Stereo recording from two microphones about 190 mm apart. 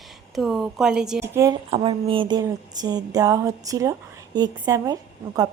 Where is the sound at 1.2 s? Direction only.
15° right (ahead or behind).